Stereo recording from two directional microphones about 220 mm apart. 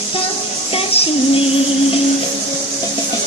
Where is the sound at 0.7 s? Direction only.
25° left (ahead or behind).